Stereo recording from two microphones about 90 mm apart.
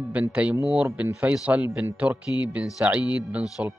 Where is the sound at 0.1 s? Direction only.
15° right (ahead or behind).